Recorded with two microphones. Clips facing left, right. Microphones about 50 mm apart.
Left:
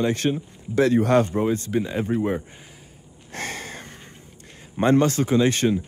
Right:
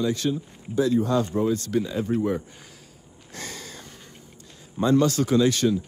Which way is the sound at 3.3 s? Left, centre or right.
Left.